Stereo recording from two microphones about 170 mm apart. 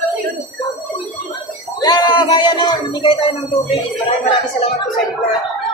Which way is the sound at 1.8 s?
25° left (ahead or behind).